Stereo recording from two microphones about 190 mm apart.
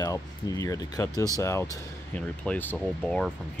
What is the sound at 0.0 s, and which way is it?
Speech, 20° left (ahead or behind).